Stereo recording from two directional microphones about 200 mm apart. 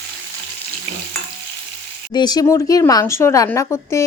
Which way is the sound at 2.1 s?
20° left (ahead or behind).